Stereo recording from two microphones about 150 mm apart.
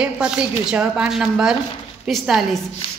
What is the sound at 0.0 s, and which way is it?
A woman's voice, 5° right (ahead or behind).